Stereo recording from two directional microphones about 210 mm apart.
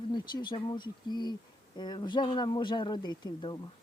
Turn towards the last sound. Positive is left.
turn(degrees=20)  # may be behind; listen again after turning